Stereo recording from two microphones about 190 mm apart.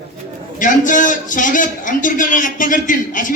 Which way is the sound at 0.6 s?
40° left (ahead or behind).